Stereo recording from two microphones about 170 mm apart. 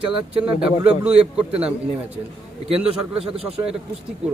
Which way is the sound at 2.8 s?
5° right (ahead or behind).